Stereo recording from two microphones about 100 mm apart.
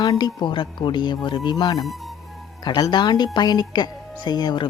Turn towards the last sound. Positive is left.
turn(degrees=50)  # may be behind; listen again after turning